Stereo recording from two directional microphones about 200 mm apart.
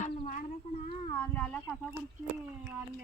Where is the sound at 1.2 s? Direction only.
5° left (ahead or behind).